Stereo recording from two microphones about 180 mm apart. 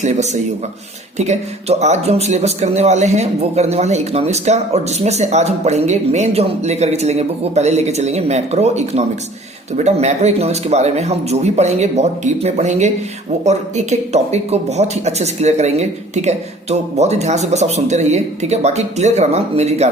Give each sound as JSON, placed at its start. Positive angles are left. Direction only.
{"t": 0.0, "sound": "a man's voice", "side_deg": -40}